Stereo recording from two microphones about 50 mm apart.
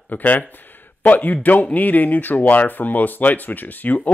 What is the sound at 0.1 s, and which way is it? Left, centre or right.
Speech, left.